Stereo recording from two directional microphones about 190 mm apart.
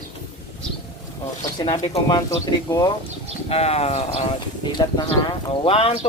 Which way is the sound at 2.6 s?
15° left (ahead or behind).